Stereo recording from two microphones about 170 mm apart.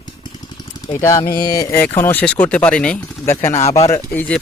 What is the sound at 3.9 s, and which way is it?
Speech, 10° left (ahead or behind).